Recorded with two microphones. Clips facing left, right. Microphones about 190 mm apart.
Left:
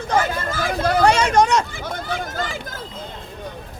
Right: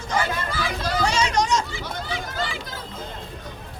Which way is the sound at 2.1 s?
50° left (ahead or behind).